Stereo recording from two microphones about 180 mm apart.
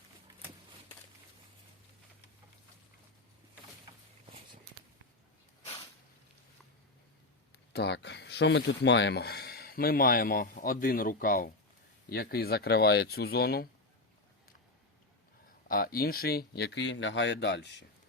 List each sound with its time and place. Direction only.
7.7 s speech: 70° left (ahead or behind)
15.7 s speech: 55° left (ahead or behind); by 17.8 s 75° left (ahead or behind)